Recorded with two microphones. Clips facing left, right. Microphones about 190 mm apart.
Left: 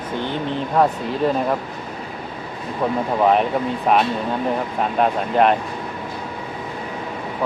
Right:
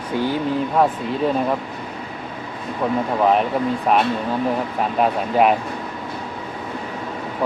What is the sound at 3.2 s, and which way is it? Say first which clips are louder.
Speech: left 1 dB; centre (ahead or behind).